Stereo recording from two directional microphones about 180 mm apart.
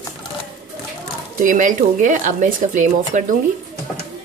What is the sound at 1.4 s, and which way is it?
Speech, 45° right (ahead or behind).